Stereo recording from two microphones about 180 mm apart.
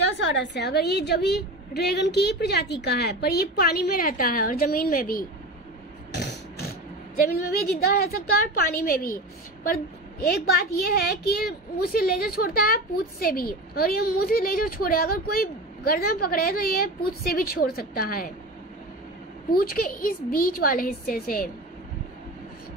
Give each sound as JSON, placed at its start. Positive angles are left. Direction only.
{"t": 0.2, "sound": "a woman's voice", "side_deg": 85}
{"t": 7.2, "sound": "a woman's voice", "side_deg": 60}
{"t": 10.5, "sound": "a woman's voice", "side_deg": 55}
{"t": 19.5, "sound": "a woman's voice", "side_deg": 55}